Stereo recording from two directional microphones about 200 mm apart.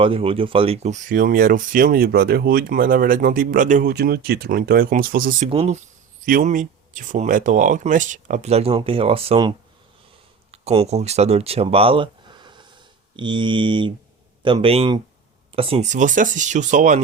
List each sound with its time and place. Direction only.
0.0 s speech: 30° right (ahead or behind)
3.9 s speech: 50° right (ahead or behind)
5.5 s speech: 30° right (ahead or behind)
6.2 s speech: 40° right (ahead or behind)